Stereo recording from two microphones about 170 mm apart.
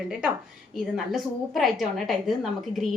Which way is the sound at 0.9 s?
Centre (ahead or behind).